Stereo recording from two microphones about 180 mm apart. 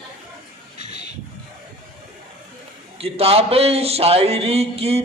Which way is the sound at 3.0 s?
35° right (ahead or behind).